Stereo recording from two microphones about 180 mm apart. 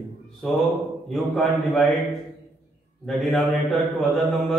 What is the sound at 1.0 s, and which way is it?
Speech, centre (ahead or behind).